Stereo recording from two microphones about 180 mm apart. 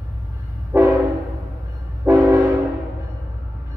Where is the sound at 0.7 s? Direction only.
15° right (ahead or behind).